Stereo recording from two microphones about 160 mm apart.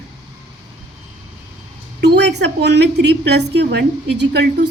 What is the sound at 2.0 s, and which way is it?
A woman's voice, 90° right.